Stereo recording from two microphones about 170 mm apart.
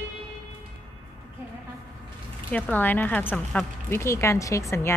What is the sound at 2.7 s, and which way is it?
A woman's voice, 10° left (ahead or behind).